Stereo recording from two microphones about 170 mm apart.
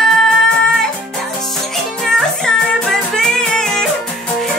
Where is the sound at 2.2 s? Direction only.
5° left (ahead or behind).